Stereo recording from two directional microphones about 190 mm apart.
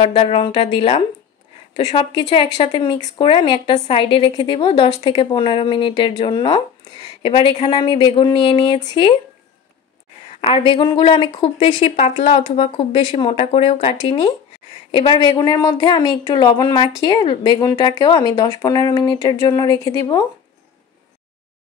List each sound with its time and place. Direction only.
0.0 s a woman's voice: 30° left (ahead or behind)
10.4 s a woman's voice: 30° left (ahead or behind)